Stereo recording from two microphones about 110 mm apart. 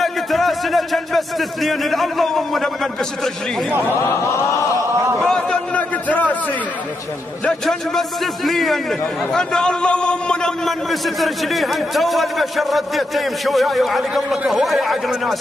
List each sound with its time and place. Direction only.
0.0 s a man's voice: centre (ahead or behind)
3.7 s a man's voice: 20° right (ahead or behind)
5.2 s a sound: 5° left (ahead or behind)
7.4 s a man's voice: 5° left (ahead or behind)